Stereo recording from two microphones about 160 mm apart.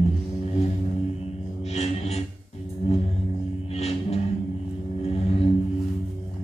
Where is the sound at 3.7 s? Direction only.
40° left (ahead or behind).